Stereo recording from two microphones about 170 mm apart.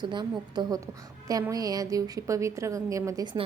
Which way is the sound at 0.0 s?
25° right (ahead or behind).